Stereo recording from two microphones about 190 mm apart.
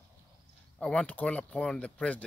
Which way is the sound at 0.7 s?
5° left (ahead or behind).